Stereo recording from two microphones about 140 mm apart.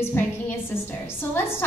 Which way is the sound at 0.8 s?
15° left (ahead or behind).